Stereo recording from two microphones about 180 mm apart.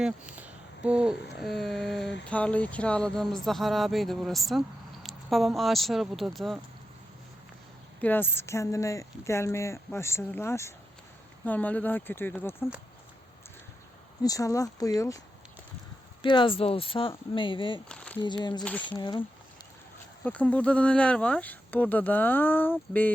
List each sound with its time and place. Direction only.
0.0 s speech: 5° right (ahead or behind)
8.0 s speech: 10° left (ahead or behind)
14.2 s speech: 20° left (ahead or behind)
16.2 s speech: 25° left (ahead or behind)
17.8 s speech: 5° left (ahead or behind)
18.2 s speech: 25° left (ahead or behind)
18.6 s speech: 10° left (ahead or behind)
18.9 s speech: 25° left (ahead or behind)
20.2 s speech: 10° left (ahead or behind)